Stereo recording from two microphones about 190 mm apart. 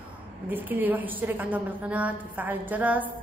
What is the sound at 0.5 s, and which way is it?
A woman's voice, 10° right (ahead or behind).